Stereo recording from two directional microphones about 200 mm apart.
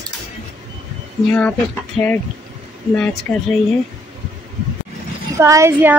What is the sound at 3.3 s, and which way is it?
Speech, centre (ahead or behind).